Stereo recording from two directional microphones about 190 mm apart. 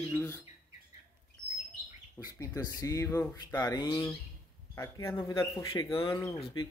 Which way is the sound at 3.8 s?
25° left (ahead or behind).